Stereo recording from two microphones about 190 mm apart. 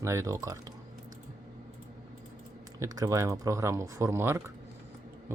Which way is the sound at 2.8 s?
15° right (ahead or behind).